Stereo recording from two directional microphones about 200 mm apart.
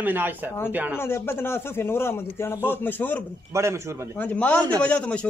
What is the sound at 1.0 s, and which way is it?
A man's voice, 10° left (ahead or behind).